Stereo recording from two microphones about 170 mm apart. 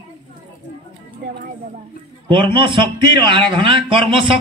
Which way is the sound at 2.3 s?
30° right (ahead or behind).